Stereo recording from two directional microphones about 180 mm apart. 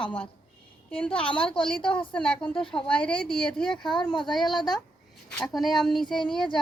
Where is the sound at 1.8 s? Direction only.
30° left (ahead or behind).